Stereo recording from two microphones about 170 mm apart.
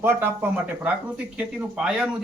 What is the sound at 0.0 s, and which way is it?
Speech, 10° right (ahead or behind).